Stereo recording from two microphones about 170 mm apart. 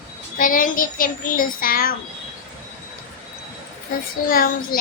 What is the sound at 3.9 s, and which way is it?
Child singing, 55° left (ahead or behind).